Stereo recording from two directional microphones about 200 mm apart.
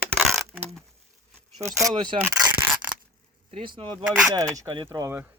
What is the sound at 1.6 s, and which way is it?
Speech, 15° right (ahead or behind).